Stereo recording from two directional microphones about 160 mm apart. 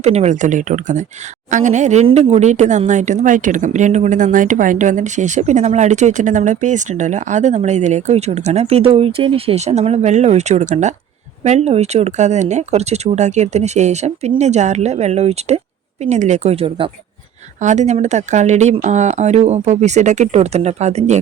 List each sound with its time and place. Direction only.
0.0 s speech: 45° right (ahead or behind)
17.6 s speech: 45° right (ahead or behind)